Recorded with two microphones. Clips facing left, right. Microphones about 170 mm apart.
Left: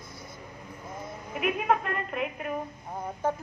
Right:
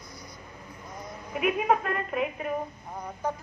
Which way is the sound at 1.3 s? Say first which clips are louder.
Right 2 dB; centre (ahead or behind).